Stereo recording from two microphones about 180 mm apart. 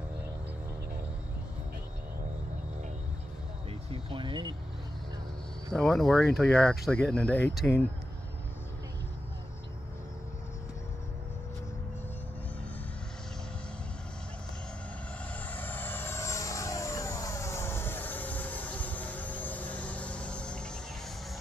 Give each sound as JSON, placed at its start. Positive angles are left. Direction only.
{"t": 3.9, "sound": "speech", "side_deg": -30}
{"t": 5.7, "sound": "speech", "side_deg": 5}
{"t": 15.4, "sound": "vehicle", "side_deg": 10}